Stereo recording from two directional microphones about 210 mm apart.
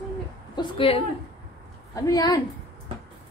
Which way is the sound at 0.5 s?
25° left (ahead or behind).